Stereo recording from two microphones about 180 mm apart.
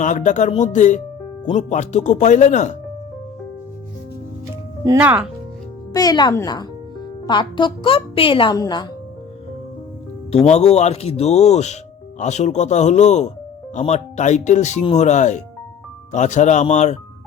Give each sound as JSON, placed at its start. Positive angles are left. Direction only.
{"t": 0.0, "sound": "speech", "side_deg": 45}
{"t": 4.9, "sound": "speech", "side_deg": -10}
{"t": 5.9, "sound": "a woman's voice", "side_deg": 20}
{"t": 10.3, "sound": "speech", "side_deg": 40}